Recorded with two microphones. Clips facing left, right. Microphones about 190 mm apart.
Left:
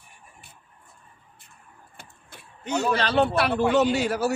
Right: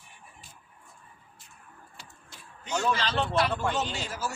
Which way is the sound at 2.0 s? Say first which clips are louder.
Left 6 dB; 60° left (ahead or behind).